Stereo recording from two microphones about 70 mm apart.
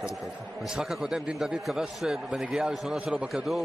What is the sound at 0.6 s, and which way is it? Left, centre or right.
A man's voice, centre.